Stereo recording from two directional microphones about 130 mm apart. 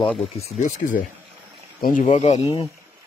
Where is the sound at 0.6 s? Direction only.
90° left.